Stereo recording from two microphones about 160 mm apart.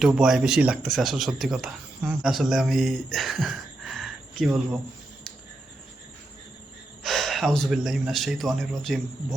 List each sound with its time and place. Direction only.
0.0 s speech: 5° right (ahead or behind)
7.0 s speech: centre (ahead or behind)